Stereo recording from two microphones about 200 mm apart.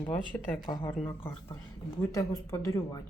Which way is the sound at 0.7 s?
20° left (ahead or behind).